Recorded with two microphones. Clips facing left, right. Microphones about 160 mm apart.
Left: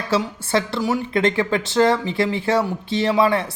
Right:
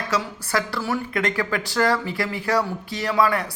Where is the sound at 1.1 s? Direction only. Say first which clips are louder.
Left 5 dB; 25° left (ahead or behind).